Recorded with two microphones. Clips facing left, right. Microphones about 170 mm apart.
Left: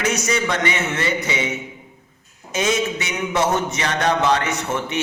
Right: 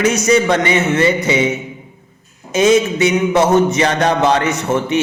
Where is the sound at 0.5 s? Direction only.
20° right (ahead or behind).